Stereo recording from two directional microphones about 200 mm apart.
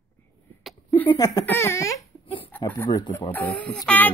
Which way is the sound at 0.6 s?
10° left (ahead or behind).